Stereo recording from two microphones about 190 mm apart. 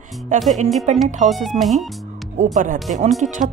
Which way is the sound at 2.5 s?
40° right (ahead or behind).